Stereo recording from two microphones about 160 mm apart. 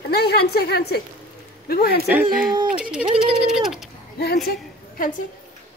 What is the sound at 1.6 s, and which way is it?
Speech, 70° left (ahead or behind).